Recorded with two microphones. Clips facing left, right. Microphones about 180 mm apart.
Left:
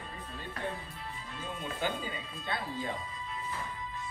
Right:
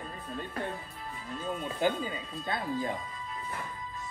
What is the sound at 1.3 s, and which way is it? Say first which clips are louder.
Speech: right 5 dB; 40° right (ahead or behind).